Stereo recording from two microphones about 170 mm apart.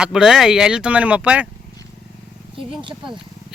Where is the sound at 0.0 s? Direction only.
5° right (ahead or behind).